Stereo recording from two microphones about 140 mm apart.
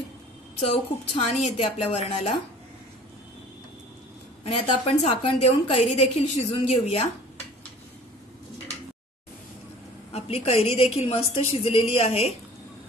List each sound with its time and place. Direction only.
0.6 s a woman's voice: 50° left (ahead or behind)
4.5 s a woman's voice: 45° left (ahead or behind)
10.1 s a woman's voice: 45° left (ahead or behind)